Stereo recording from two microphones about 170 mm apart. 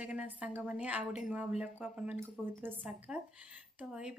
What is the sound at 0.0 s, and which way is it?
Speech, 5° right (ahead or behind).